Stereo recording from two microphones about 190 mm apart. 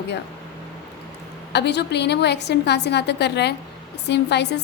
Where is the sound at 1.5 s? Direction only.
60° left (ahead or behind).